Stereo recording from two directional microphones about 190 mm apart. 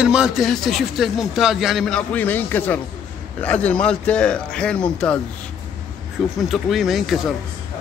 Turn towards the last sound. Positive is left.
turn(degrees=0)  # may be behind; listen again after turning